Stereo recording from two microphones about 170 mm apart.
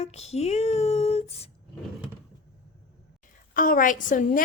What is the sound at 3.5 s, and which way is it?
Speech, 55° left (ahead or behind).